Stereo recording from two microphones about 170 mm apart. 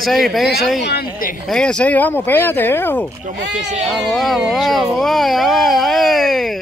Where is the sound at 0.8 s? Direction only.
70° left (ahead or behind).